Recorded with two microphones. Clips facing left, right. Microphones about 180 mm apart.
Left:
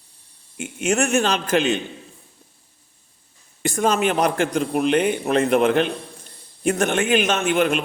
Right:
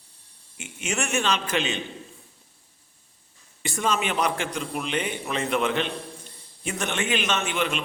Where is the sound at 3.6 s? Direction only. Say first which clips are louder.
Left 7 dB; 45° left (ahead or behind).